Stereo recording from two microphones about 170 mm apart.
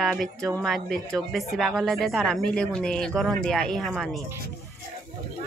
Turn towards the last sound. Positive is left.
turn(degrees=0)  # may be behind; listen again after turning